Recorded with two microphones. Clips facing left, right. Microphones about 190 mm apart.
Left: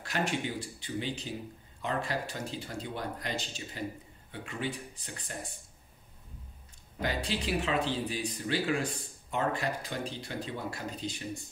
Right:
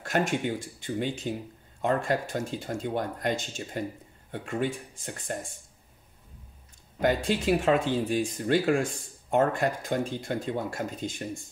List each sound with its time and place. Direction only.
0.0 s speech: 50° right (ahead or behind)
7.0 s speech: 50° right (ahead or behind)